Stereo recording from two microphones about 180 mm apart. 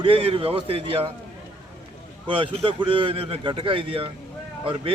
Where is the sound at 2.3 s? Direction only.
30° right (ahead or behind).